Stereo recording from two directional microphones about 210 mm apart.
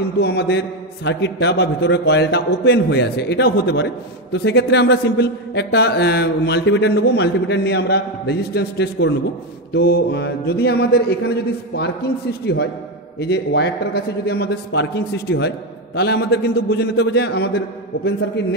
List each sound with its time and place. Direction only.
0.2 s a man's voice: 50° left (ahead or behind)